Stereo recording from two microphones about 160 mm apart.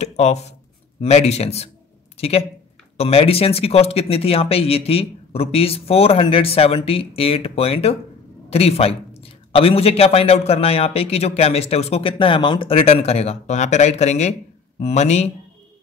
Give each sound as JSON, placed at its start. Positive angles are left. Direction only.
{"t": 0.0, "sound": "a man's voice", "side_deg": 45}